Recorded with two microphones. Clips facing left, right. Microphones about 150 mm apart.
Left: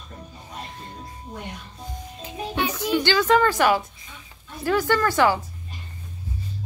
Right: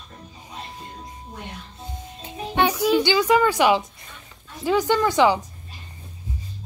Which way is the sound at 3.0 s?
15° right (ahead or behind).